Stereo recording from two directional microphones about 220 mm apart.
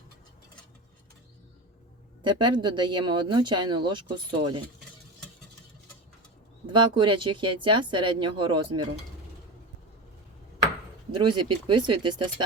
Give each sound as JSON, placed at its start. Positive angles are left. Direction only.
{"t": 2.2, "sound": "speech", "side_deg": -20}
{"t": 6.7, "sound": "speech", "side_deg": -20}
{"t": 11.3, "sound": "speech", "side_deg": -20}